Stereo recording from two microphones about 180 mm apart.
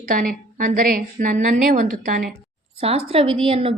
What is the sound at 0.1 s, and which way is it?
A woman's voice, 50° right (ahead or behind).